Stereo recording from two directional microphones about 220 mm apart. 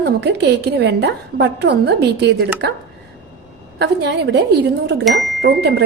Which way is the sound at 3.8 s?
50° right (ahead or behind).